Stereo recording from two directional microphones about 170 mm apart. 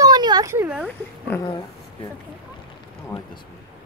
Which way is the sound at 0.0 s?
25° right (ahead or behind).